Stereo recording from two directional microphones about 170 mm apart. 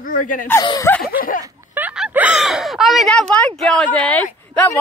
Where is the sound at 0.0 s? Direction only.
50° left (ahead or behind).